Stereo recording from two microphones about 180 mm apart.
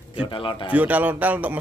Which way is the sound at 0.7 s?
10° right (ahead or behind).